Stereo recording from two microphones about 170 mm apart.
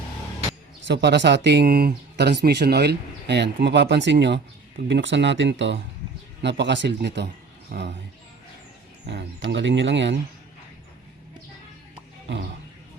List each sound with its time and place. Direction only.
0.9 s speech: 90° right
9.0 s speech: 90° right